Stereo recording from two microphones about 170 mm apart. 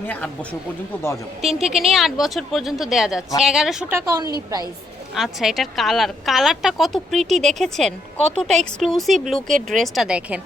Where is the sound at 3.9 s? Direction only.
15° right (ahead or behind).